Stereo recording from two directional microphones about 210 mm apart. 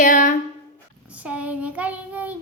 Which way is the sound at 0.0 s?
40° left (ahead or behind).